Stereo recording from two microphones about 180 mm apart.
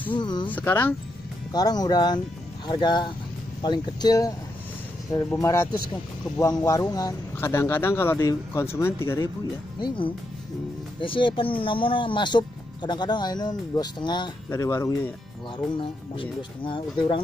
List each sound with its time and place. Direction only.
0.1 s speech: 25° left (ahead or behind)
0.5 s speech: 10° left (ahead or behind)
1.5 s speech: 20° left (ahead or behind)
11.0 s speech: 25° left (ahead or behind)
15.5 s speech: 30° left (ahead or behind)